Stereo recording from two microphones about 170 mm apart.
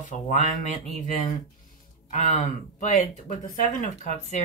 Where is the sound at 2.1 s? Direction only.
45° left (ahead or behind).